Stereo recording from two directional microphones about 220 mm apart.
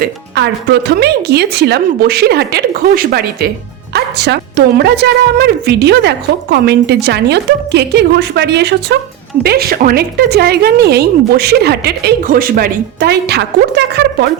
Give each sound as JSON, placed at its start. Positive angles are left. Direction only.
{"t": 0.0, "sound": "a woman's voice", "side_deg": -50}